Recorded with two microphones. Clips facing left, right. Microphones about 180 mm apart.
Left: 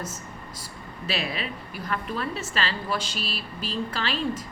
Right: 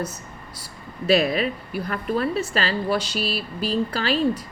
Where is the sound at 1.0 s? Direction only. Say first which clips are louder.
Right 11 dB; 40° right (ahead or behind).